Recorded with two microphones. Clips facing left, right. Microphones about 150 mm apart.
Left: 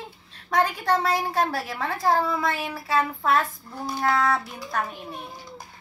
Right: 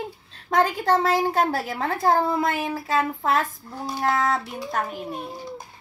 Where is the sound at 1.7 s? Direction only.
40° right (ahead or behind).